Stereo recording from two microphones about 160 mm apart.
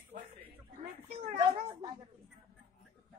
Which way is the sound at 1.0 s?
40° right (ahead or behind).